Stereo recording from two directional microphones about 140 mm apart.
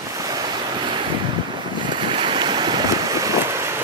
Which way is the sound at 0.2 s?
30° right (ahead or behind).